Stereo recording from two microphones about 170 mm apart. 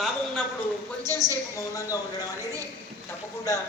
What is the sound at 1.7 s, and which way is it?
Speech, 20° left (ahead or behind).